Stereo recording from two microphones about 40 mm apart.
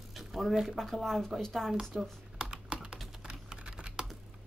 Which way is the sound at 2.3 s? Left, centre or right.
Right.